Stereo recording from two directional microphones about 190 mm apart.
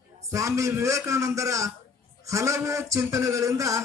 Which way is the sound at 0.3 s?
15° right (ahead or behind).